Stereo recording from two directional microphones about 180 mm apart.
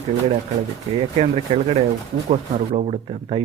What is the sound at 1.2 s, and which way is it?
Speech, 35° right (ahead or behind).